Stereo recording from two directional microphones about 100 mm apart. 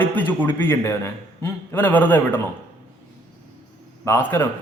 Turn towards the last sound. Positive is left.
turn(degrees=20)  # may be behind; listen again after turning